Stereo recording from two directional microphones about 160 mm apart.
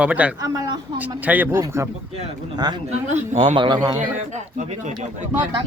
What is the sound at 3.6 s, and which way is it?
Speech, 25° right (ahead or behind).